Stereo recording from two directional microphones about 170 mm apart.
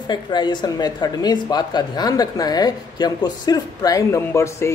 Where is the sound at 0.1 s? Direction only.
25° left (ahead or behind).